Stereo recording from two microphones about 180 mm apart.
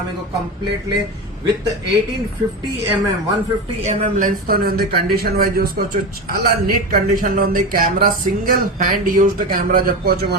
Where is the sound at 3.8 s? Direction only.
45° right (ahead or behind).